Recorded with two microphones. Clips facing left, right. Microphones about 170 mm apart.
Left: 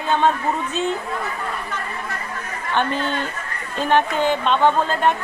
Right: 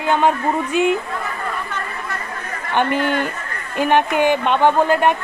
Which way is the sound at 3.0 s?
15° right (ahead or behind).